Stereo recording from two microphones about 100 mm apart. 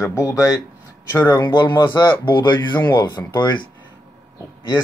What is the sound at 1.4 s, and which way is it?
Speech, 50° left (ahead or behind).